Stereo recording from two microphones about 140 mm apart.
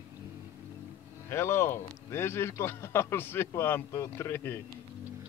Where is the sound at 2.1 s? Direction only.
15° left (ahead or behind).